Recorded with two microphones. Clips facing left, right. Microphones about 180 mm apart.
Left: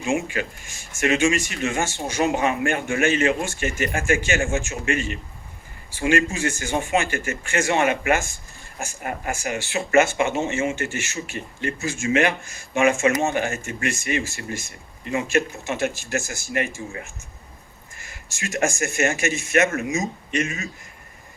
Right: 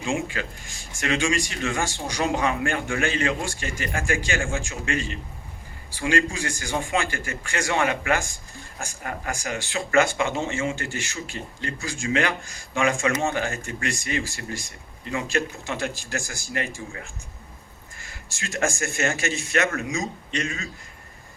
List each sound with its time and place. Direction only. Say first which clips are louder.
0.1 s speech: left 3 dB; 20° left (ahead or behind)